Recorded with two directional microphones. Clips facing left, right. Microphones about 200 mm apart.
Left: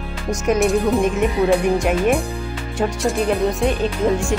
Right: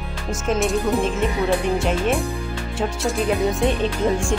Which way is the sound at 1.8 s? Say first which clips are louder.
Left 3 dB; 15° left (ahead or behind).